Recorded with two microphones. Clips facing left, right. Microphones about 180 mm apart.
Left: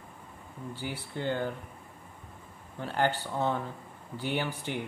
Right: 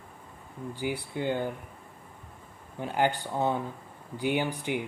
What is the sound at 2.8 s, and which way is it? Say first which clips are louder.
Speech: right 2 dB; 15° right (ahead or behind).